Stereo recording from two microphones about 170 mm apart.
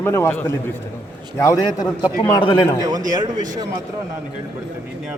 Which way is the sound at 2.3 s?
30° left (ahead or behind).